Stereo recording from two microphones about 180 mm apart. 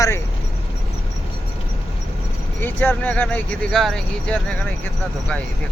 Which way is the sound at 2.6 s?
10° left (ahead or behind).